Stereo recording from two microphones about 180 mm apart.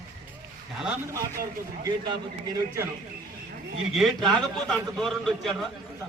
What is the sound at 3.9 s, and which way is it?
A man's voice, centre (ahead or behind).